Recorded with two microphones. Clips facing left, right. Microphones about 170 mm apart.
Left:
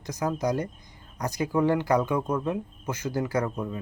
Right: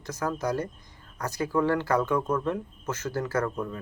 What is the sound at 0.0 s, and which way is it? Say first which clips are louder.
Speech: left 2 dB; 15° left (ahead or behind).